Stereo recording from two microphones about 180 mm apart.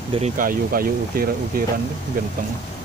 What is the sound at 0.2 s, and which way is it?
Speech, 50° right (ahead or behind).